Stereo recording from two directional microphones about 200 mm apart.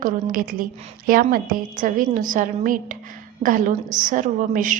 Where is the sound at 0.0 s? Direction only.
45° right (ahead or behind).